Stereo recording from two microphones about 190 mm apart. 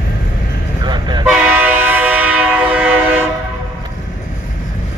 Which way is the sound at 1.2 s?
10° right (ahead or behind).